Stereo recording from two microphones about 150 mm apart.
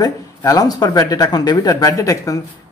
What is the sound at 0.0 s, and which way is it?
Speech, 25° left (ahead or behind).